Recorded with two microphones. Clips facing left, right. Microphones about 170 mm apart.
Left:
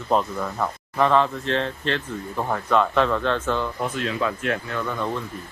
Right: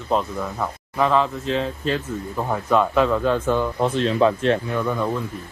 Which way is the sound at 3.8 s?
30° right (ahead or behind).